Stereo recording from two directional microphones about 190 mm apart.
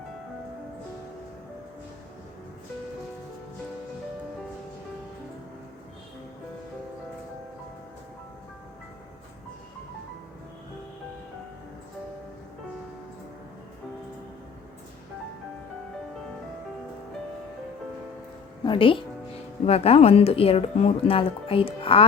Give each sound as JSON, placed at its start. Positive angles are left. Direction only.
{"t": 18.6, "sound": "speech", "side_deg": 25}